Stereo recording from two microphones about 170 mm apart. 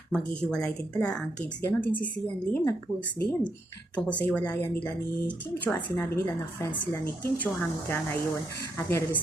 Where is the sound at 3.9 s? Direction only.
10° left (ahead or behind).